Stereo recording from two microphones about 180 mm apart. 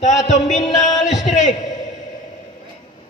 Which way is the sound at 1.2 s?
40° left (ahead or behind).